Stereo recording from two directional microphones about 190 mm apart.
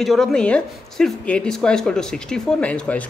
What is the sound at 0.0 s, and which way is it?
A woman's voice, centre (ahead or behind).